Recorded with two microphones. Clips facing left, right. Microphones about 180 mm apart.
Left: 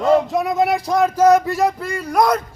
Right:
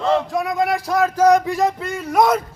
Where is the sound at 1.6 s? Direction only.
Centre (ahead or behind).